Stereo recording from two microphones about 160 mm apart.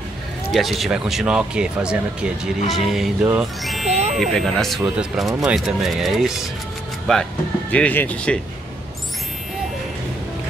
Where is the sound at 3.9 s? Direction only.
45° right (ahead or behind).